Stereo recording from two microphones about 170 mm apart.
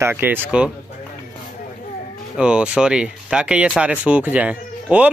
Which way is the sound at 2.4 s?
5° right (ahead or behind).